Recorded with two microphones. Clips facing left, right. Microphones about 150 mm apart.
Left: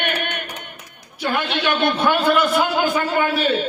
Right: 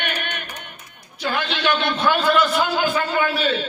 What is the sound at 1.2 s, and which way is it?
A man's voice, 55° left (ahead or behind).